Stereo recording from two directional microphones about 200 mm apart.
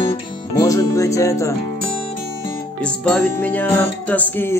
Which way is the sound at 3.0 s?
5° left (ahead or behind).